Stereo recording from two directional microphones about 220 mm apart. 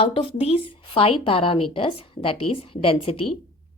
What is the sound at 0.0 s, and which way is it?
Speech, 25° left (ahead or behind).